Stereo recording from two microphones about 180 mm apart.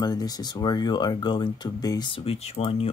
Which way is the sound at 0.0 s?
20° left (ahead or behind).